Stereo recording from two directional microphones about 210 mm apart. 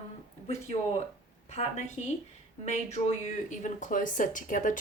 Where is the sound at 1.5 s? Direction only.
30° left (ahead or behind).